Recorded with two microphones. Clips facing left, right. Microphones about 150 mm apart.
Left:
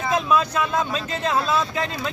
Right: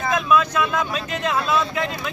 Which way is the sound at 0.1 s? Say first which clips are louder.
Right 1 dB; 30° left (ahead or behind).